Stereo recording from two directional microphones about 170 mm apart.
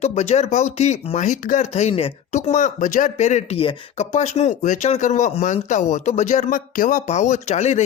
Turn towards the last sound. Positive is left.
turn(degrees=40)  # may be behind; listen again after turning